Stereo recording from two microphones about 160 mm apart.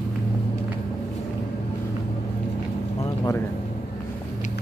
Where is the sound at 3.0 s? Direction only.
20° left (ahead or behind).